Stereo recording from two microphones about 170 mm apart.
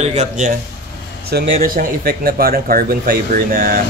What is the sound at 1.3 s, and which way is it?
Speech, 60° right (ahead or behind).